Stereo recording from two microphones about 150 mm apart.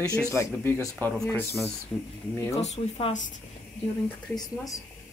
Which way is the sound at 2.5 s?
40° left (ahead or behind).